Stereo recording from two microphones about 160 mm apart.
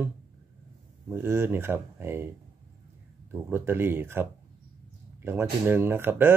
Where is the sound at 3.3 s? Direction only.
15° right (ahead or behind).